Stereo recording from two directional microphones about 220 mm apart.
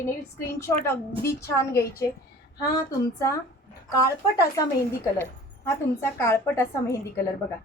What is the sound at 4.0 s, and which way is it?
Speech, 15° left (ahead or behind).